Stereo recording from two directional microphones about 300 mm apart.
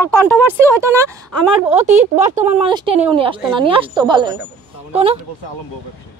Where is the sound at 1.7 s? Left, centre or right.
Right.